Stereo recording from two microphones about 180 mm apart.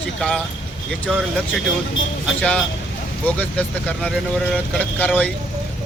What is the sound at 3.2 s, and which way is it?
Speech, 10° left (ahead or behind).